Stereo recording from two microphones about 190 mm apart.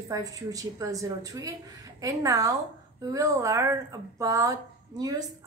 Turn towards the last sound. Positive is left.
turn(degrees=-20)  # may be behind; listen again after turning